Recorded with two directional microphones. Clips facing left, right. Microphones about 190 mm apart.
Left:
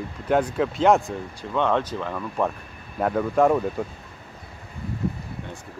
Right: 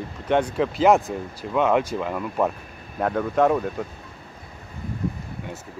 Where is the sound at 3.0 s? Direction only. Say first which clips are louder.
Left 1 dB; 5° left (ahead or behind).